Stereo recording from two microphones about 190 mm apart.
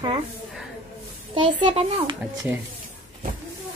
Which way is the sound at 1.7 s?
25° right (ahead or behind).